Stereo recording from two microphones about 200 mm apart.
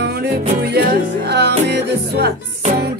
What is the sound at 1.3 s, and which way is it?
Music, 55° right (ahead or behind).